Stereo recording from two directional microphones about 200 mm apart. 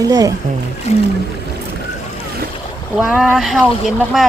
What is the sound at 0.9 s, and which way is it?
Music, 35° left (ahead or behind).